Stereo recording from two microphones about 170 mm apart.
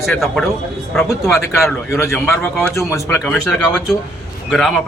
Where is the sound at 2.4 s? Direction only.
15° left (ahead or behind).